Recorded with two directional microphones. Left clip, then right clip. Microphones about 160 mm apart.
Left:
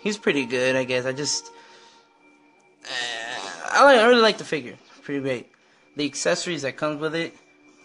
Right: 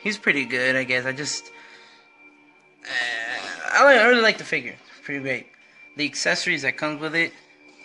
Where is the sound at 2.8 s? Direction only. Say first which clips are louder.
Right 3 dB; 25° left (ahead or behind).